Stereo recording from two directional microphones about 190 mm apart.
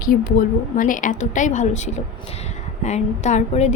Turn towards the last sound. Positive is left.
turn(degrees=35)  # may be behind; listen again after turning